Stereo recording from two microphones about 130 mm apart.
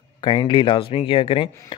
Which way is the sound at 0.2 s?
40° left (ahead or behind).